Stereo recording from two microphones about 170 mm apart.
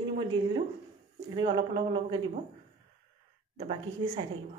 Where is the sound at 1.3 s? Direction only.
30° right (ahead or behind).